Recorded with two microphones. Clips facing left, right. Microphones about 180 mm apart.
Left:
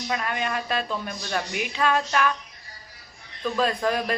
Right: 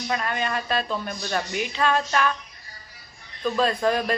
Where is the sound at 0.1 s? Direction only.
5° left (ahead or behind).